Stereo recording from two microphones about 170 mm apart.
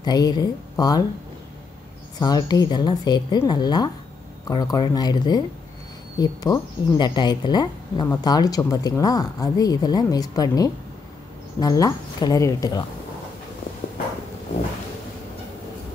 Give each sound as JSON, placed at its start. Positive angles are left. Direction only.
{"t": 0.0, "sound": "a woman's voice", "side_deg": 25}
{"t": 2.1, "sound": "a woman's voice", "side_deg": 25}